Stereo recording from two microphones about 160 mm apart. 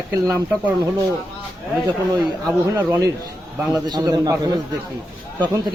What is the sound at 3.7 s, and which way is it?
Speech, 25° right (ahead or behind).